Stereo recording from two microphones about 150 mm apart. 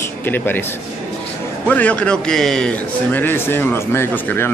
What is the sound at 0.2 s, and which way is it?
A man's voice, 15° left (ahead or behind).